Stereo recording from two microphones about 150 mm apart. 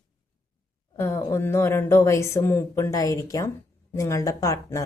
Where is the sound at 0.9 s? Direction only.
15° left (ahead or behind).